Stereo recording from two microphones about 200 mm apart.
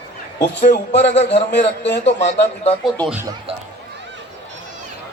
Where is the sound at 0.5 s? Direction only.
60° left (ahead or behind).